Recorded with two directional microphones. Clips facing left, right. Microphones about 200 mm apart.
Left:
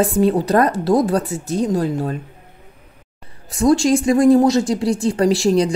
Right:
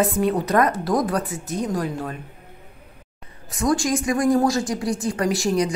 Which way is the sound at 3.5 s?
30° left (ahead or behind).